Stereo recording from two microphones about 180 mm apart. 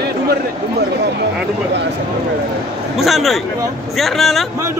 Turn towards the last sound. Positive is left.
turn(degrees=0)  # may be behind; listen again after turning